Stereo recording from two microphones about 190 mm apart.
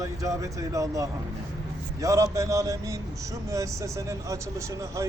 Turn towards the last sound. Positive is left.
turn(degrees=-15)  # may be behind; listen again after turning